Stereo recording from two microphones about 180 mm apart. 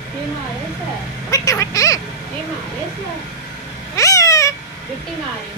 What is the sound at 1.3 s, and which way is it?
Vehicle, 20° left (ahead or behind).